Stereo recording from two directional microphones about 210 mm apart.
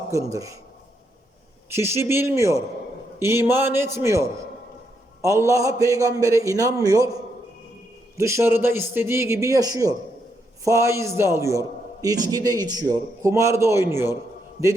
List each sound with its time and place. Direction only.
0.1 s a man's voice: 15° right (ahead or behind)
1.7 s a man's voice: 10° right (ahead or behind)
5.5 s a man's voice: 15° right (ahead or behind)
8.1 s a man's voice: 15° right (ahead or behind)